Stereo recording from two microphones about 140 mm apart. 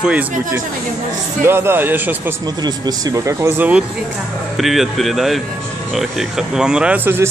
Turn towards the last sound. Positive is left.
turn(degrees=-10)  # may be behind; listen again after turning